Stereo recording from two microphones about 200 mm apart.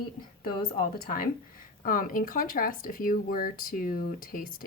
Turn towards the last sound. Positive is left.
turn(degrees=45)  # may be behind; listen again after turning